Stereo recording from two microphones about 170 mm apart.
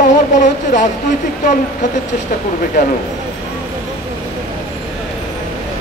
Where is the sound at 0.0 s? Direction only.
50° left (ahead or behind).